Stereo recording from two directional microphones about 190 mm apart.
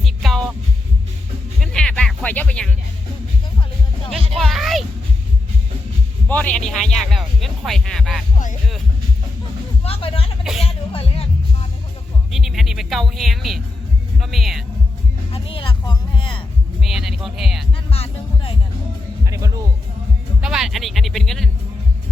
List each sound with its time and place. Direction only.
0.0 s heart sounds: centre (ahead or behind)
1.5 s music: centre (ahead or behind)
4.4 s music: centre (ahead or behind)
6.2 s speech: 10° left (ahead or behind)
9.8 s a sound: 30° left (ahead or behind)
10.6 s music: 30° left (ahead or behind)
12.3 s speech: centre (ahead or behind)
15.3 s music: 30° left (ahead or behind)
16.8 s speech: centre (ahead or behind)
17.9 s music: 30° left (ahead or behind)
19.2 s music: 15° right (ahead or behind)
20.4 s speech: centre (ahead or behind)